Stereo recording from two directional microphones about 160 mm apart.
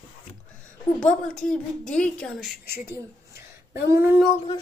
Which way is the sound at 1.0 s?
5° left (ahead or behind).